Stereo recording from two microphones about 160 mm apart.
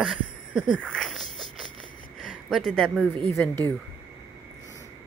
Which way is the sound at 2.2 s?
Centre (ahead or behind).